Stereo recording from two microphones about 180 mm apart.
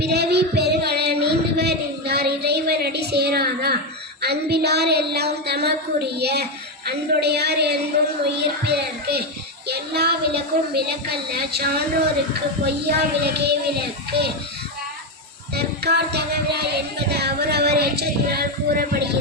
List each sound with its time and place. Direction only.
0.0 s a sound: 65° right (ahead or behind)
4.2 s a woman's voice: 65° right (ahead or behind)
15.5 s a woman's voice: 65° right (ahead or behind)